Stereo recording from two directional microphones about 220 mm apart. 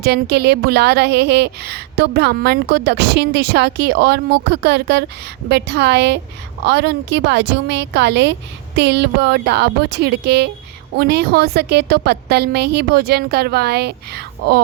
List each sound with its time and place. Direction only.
0.0 s a woman's voice: 45° right (ahead or behind)